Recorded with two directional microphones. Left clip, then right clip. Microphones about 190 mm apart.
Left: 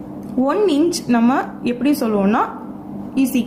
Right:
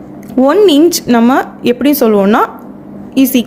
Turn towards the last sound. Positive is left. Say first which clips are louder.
# right 8 dB
turn(degrees=-45)  # may be behind; listen again after turning